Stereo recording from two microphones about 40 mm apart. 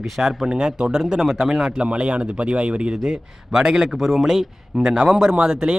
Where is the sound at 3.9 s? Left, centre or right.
Centre.